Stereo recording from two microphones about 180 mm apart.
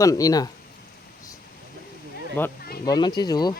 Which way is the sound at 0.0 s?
20° left (ahead or behind).